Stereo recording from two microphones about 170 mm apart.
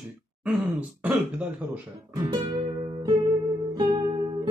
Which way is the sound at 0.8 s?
10° right (ahead or behind).